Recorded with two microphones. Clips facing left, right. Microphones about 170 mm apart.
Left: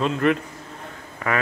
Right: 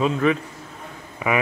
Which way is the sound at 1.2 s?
10° right (ahead or behind).